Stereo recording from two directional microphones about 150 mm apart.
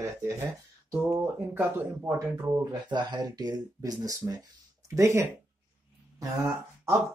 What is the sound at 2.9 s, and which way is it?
Speech, 30° right (ahead or behind).